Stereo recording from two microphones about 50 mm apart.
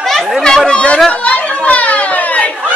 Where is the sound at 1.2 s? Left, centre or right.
Left.